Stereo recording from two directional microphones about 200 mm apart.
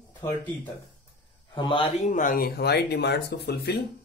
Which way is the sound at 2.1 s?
40° left (ahead or behind).